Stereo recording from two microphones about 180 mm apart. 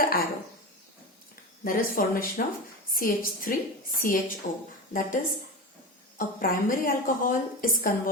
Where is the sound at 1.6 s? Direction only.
55° left (ahead or behind).